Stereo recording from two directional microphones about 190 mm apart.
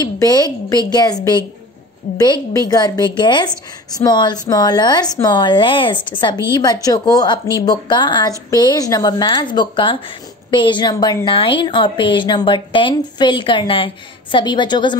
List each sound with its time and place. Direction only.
0.0 s a woman's voice: 20° left (ahead or behind)
2.5 s a woman's voice: 20° left (ahead or behind)